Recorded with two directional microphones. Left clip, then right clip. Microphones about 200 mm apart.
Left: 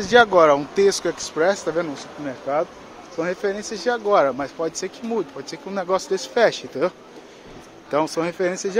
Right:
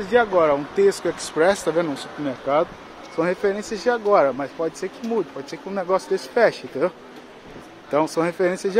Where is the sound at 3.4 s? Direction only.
15° right (ahead or behind).